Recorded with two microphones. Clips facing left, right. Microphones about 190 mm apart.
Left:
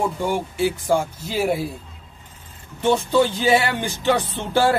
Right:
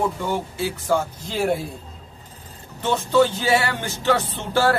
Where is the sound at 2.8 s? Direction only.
15° left (ahead or behind).